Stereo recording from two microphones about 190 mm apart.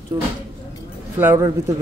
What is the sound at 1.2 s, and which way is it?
Speech, 15° right (ahead or behind).